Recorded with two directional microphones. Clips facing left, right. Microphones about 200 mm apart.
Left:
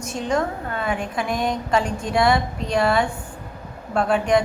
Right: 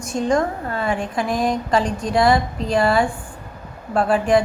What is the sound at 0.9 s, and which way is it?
A woman's voice, 5° left (ahead or behind).